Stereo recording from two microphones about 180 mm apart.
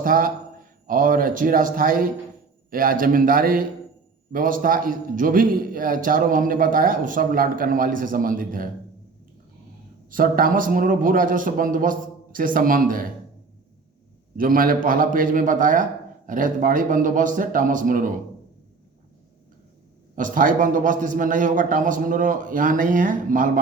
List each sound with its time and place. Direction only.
0.0 s a man's voice: 50° right (ahead or behind)
10.1 s a man's voice: 50° right (ahead or behind)
14.3 s a man's voice: 50° right (ahead or behind)
20.1 s a man's voice: 50° right (ahead or behind)